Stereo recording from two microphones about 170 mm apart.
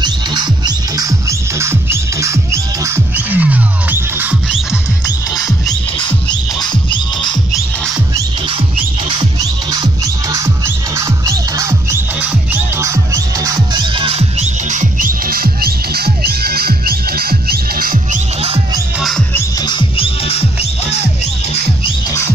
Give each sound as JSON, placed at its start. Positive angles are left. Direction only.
{"t": 0.0, "sound": "music", "side_deg": -25}
{"t": 6.6, "sound": "music", "side_deg": 25}
{"t": 9.4, "sound": "music", "side_deg": -20}
{"t": 13.9, "sound": "music", "side_deg": -35}
{"t": 18.9, "sound": "music", "side_deg": 0}
{"t": 19.6, "sound": "music", "side_deg": 30}